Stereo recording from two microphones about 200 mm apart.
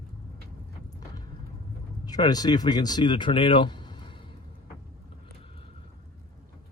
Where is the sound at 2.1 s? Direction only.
20° left (ahead or behind).